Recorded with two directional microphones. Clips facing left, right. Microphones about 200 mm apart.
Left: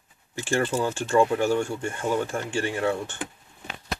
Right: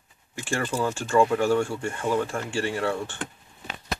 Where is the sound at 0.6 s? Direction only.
25° left (ahead or behind).